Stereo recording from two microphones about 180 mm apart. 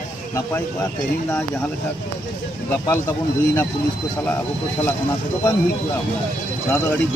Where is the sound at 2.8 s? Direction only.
15° left (ahead or behind).